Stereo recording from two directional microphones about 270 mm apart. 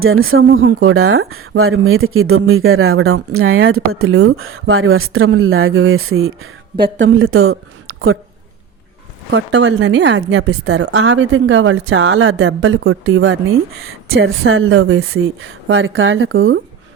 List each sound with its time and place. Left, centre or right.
0.0 s a woman's voice: right
9.3 s speech: right